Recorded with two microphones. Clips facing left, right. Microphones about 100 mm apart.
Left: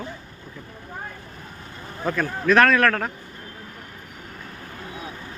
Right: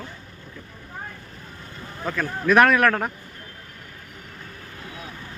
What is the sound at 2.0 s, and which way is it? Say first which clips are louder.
Speech: left 3 dB; 5° left (ahead or behind).